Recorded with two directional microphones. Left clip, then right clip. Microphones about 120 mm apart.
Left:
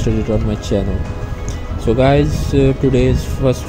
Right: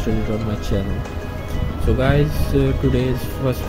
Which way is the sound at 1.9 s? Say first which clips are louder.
Left 6 dB; 35° left (ahead or behind).